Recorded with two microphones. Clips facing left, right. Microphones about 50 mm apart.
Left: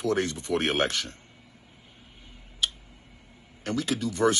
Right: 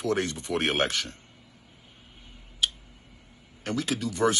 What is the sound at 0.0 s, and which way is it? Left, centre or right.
Speech, right.